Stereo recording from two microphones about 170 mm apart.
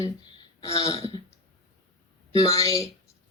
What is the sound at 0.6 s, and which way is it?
Speech, 20° left (ahead or behind).